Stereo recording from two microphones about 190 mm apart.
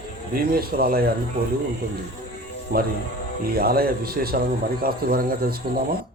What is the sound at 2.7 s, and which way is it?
Speech, 50° right (ahead or behind).